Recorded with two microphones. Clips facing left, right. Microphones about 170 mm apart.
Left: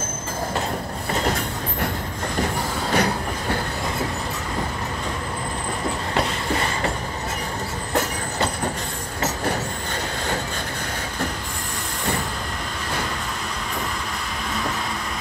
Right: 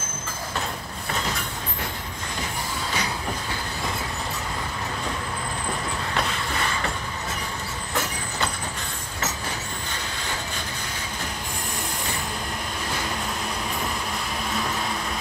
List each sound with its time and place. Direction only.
2.9 s train: 60° left (ahead or behind)